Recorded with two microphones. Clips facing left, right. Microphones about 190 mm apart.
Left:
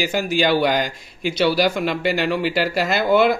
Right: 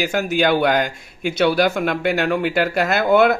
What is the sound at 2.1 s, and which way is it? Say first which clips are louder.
Speech: right 1 dB; centre (ahead or behind).